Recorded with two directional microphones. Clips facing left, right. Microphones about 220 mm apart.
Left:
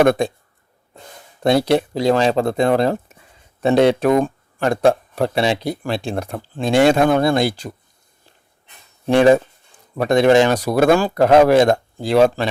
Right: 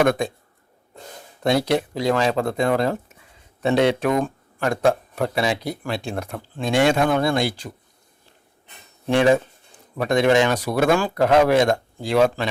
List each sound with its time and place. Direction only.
0.0 s speech: 30° left (ahead or behind)
1.5 s speech: 30° left (ahead or behind)
9.0 s speech: 35° left (ahead or behind)